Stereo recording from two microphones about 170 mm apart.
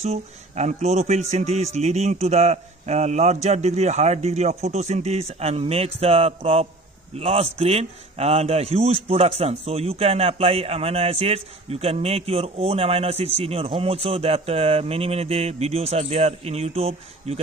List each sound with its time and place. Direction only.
0.0 s a man's voice: 40° right (ahead or behind)